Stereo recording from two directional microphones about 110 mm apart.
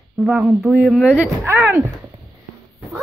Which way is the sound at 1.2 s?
20° right (ahead or behind).